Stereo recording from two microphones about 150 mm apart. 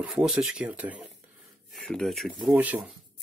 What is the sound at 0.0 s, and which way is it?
Speech, 5° right (ahead or behind).